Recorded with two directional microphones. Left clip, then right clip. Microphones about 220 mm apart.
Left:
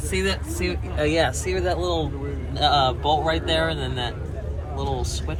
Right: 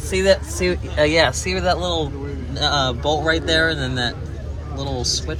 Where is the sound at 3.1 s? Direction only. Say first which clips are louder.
Right 2 dB; 5° right (ahead or behind).